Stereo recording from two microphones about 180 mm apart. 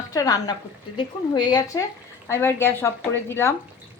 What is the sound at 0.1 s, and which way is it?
A woman's voice, 20° left (ahead or behind).